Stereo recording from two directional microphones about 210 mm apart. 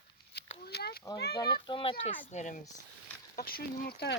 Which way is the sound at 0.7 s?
50° left (ahead or behind).